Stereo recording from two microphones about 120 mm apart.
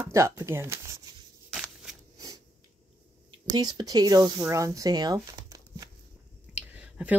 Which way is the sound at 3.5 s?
35° right (ahead or behind).